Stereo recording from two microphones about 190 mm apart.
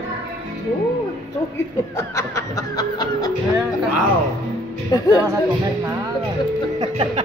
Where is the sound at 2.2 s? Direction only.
20° left (ahead or behind).